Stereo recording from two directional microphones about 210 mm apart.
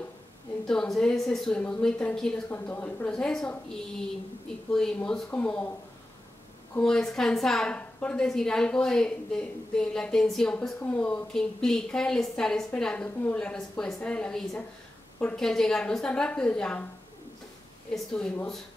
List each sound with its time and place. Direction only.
0.7 s a woman's voice: centre (ahead or behind)
4.7 s a woman's voice: 5° left (ahead or behind)
6.7 s a woman's voice: 5° left (ahead or behind)
17.9 s a woman's voice: 5° left (ahead or behind)